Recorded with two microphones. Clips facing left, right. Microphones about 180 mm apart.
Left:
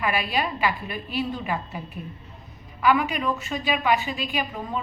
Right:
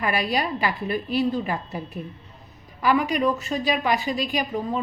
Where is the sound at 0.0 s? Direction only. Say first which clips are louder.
Right 1 dB; 40° right (ahead or behind).